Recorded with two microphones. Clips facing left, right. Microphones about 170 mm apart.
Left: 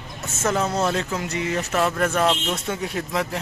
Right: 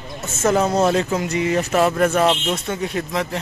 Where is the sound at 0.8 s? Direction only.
15° right (ahead or behind).